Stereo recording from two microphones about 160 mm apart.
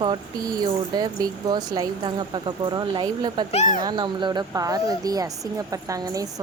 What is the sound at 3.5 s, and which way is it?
Speech, 50° left (ahead or behind).